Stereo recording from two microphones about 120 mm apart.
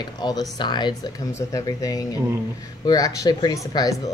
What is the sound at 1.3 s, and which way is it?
Speech, 30° left (ahead or behind).